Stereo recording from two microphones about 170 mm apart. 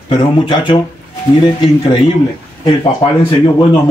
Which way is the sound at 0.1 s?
30° left (ahead or behind).